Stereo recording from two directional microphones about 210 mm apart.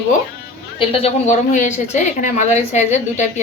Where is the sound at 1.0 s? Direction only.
35° left (ahead or behind).